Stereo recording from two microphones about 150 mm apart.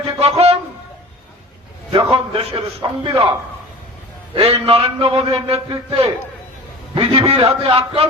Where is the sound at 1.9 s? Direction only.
35° right (ahead or behind).